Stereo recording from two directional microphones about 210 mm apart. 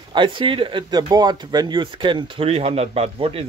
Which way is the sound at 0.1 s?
20° right (ahead or behind).